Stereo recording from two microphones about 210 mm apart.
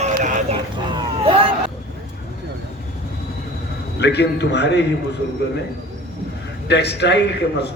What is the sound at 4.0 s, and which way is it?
Speech, 55° left (ahead or behind).